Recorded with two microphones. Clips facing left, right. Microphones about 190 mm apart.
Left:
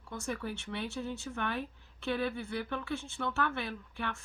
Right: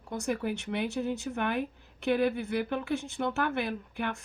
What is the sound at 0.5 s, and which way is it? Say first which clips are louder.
A woman's voice: right 6 dB; 15° right (ahead or behind).